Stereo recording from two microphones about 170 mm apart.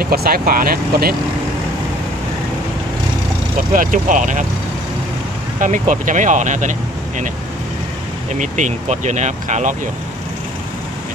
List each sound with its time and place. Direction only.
0.0 s speech: 65° right (ahead or behind)
3.7 s speech: 50° right (ahead or behind)
5.6 s speech: 50° right (ahead or behind)
8.3 s speech: 45° right (ahead or behind)